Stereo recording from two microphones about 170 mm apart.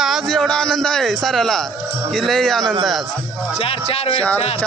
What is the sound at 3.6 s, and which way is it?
Speech, 35° left (ahead or behind).